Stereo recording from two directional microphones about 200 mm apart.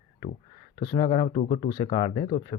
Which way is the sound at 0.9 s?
25° left (ahead or behind).